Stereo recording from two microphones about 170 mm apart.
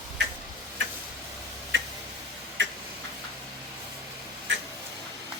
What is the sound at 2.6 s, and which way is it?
Tick-tock, 90° right.